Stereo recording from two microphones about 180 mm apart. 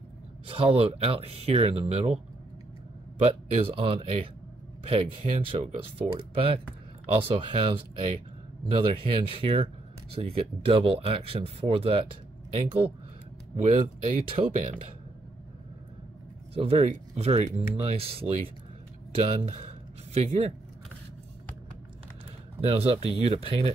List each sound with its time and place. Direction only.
0.5 s speech: 30° right (ahead or behind)
3.2 s speech: 35° right (ahead or behind)
14.0 s speech: 30° right (ahead or behind)
14.5 s speech: 45° right (ahead or behind)
16.5 s speech: 30° right (ahead or behind)
22.6 s speech: 35° right (ahead or behind)